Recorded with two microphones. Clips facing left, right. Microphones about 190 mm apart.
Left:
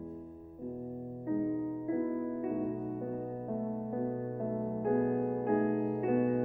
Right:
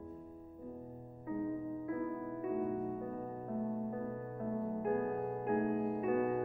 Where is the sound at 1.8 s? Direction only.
25° left (ahead or behind).